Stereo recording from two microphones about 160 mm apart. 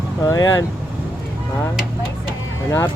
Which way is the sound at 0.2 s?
25° left (ahead or behind).